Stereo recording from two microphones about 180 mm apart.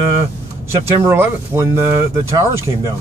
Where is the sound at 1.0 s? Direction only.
10° right (ahead or behind).